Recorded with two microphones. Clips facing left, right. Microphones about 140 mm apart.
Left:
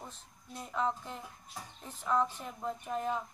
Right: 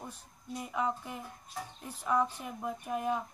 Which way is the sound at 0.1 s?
10° right (ahead or behind).